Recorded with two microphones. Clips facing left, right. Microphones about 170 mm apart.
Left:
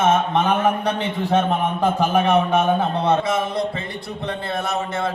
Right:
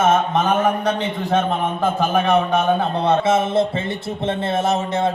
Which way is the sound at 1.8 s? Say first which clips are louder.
Even; 10° left (ahead or behind).